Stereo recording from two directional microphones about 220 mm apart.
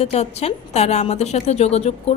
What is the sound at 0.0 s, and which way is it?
A woman's voice, 30° left (ahead or behind).